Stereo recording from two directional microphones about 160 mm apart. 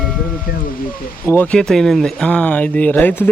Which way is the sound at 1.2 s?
10° left (ahead or behind).